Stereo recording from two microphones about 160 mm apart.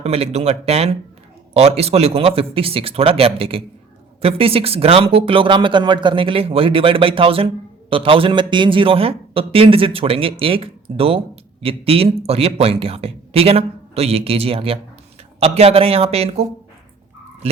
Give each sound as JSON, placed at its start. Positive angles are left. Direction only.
{"t": 0.0, "sound": "speech", "side_deg": -40}